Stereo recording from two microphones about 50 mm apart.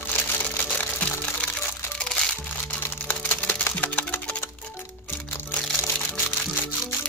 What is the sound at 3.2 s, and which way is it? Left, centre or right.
Splinter, left.